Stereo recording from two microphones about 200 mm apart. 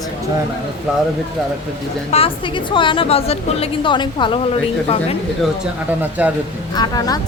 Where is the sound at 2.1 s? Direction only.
25° left (ahead or behind).